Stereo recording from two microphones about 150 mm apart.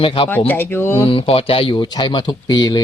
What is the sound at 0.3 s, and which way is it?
Speech, 10° left (ahead or behind).